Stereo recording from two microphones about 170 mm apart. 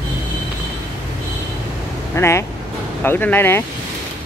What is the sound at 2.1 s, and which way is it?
Speech, 15° left (ahead or behind).